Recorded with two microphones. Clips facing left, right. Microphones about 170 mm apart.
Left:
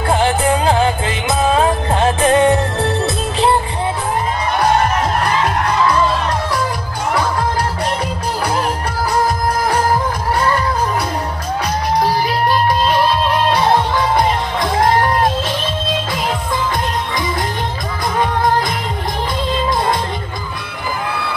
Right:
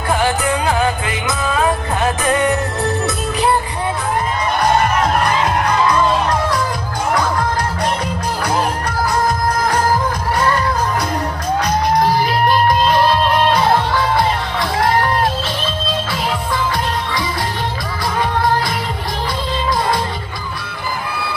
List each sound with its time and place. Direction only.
0.1 s music: 25° left (ahead or behind)
13.5 s music: 20° left (ahead or behind)